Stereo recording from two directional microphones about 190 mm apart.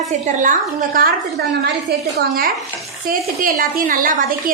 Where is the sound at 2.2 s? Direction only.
50° right (ahead or behind).